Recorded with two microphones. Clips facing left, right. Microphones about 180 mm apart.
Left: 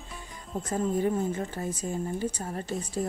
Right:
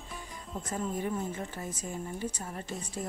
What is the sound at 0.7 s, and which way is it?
Speech, 35° left (ahead or behind).